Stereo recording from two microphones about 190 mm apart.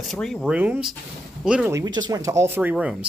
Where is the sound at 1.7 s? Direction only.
20° right (ahead or behind).